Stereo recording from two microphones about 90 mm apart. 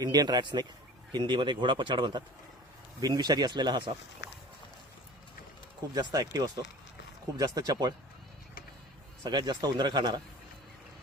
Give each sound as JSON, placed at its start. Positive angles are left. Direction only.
{"t": 0.0, "sound": "speech", "side_deg": -50}
{"t": 5.9, "sound": "speech", "side_deg": -45}
{"t": 9.3, "sound": "speech", "side_deg": -60}